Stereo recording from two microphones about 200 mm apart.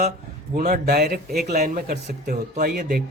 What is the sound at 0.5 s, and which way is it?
A man's voice, 45° right (ahead or behind).